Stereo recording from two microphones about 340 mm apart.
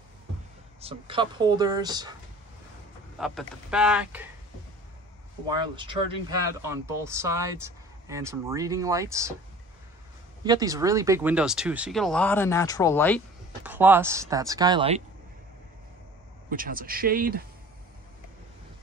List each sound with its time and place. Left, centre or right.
0.7 s speech: centre
3.2 s speech: centre
5.5 s speech: centre
10.4 s speech: centre
13.7 s speech: centre
16.4 s speech: right